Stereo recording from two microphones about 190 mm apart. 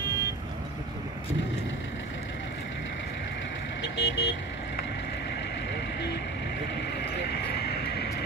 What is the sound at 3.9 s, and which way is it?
Vehicle, 65° left (ahead or behind).